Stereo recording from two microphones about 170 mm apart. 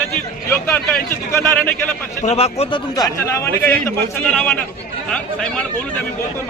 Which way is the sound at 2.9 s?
20° left (ahead or behind).